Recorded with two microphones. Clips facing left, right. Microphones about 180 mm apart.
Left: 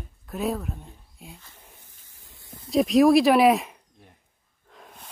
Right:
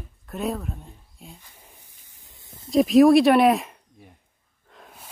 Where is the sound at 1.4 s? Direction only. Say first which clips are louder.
Even; 15° right (ahead or behind).